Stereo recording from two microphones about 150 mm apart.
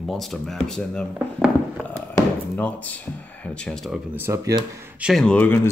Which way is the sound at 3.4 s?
5° left (ahead or behind).